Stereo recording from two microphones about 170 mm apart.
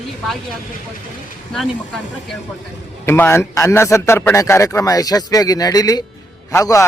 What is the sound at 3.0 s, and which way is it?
A man's voice, 15° left (ahead or behind).